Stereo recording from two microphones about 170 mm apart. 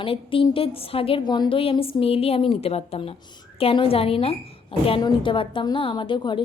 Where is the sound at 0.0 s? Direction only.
30° left (ahead or behind).